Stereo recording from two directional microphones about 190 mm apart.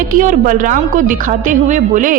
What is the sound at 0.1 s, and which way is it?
A woman's voice, 45° right (ahead or behind).